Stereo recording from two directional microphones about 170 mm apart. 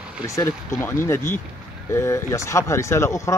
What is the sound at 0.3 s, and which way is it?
Speech, 15° left (ahead or behind).